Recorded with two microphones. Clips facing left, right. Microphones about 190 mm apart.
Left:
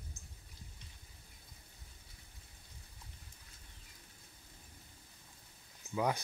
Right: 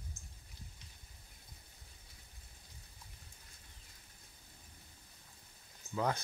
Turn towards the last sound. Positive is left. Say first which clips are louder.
# left 1 dB
turn(degrees=15)  # may be behind; listen again after turning